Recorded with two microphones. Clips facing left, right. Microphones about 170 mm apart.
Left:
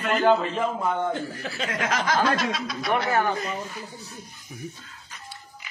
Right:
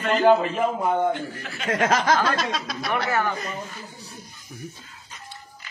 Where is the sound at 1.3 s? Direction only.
35° left (ahead or behind).